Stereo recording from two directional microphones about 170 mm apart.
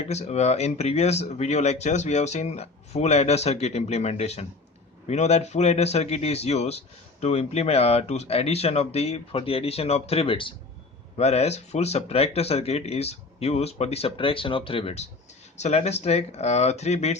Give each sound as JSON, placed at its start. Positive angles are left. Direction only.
{"t": 0.1, "sound": "a man's voice", "side_deg": 40}